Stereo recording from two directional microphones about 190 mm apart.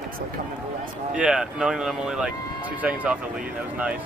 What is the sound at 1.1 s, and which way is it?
Speech, 5° right (ahead or behind).